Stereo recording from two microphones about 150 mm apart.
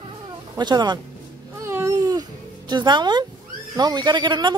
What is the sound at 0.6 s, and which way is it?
Speech, 30° right (ahead or behind).